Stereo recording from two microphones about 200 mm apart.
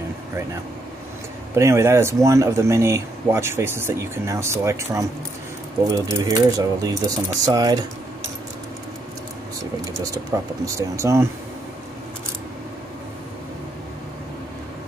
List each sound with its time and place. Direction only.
1.5 s speech: 15° right (ahead or behind)
10.1 s speech: 15° right (ahead or behind)